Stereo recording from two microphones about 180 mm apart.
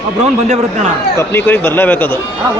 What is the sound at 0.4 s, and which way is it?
Speech, 40° right (ahead or behind).